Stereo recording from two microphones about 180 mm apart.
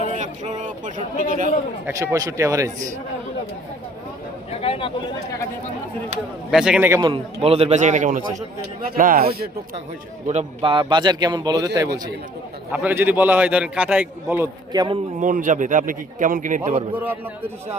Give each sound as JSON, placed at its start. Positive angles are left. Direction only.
{"t": 0.1, "sound": "speech", "side_deg": -40}
{"t": 1.9, "sound": "a man's voice", "side_deg": -20}
{"t": 4.6, "sound": "speech", "side_deg": 30}
{"t": 6.5, "sound": "a man's voice", "side_deg": -5}
{"t": 7.0, "sound": "a man's voice", "side_deg": -30}
{"t": 10.2, "sound": "a man's voice", "side_deg": -35}
{"t": 14.7, "sound": "a man's voice", "side_deg": -20}
{"t": 15.2, "sound": "a man's voice", "side_deg": -45}
{"t": 16.9, "sound": "a man's voice", "side_deg": -10}